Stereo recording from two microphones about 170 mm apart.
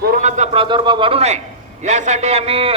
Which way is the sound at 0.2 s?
45° right (ahead or behind).